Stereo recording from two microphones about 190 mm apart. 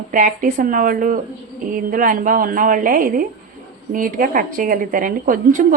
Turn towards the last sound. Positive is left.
turn(degrees=-45)  # may be behind; listen again after turning